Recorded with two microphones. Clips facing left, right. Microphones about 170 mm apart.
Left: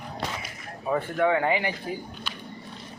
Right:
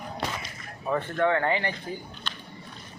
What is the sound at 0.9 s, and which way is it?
Speech, 10° left (ahead or behind).